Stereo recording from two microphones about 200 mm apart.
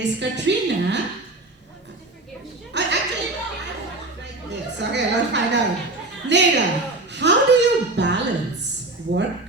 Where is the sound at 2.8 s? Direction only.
60° right (ahead or behind).